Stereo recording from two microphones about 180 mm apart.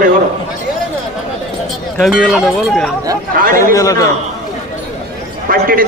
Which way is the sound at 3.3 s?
50° right (ahead or behind).